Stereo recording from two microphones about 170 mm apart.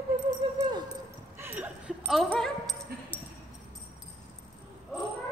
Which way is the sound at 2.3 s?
5° left (ahead or behind).